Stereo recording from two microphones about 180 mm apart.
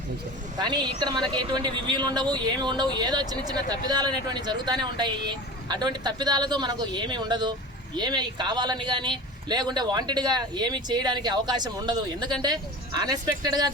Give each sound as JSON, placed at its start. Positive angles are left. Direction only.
{"t": 0.6, "sound": "speech", "side_deg": -25}